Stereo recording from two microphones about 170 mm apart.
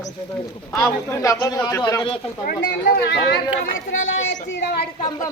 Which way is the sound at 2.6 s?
80° left.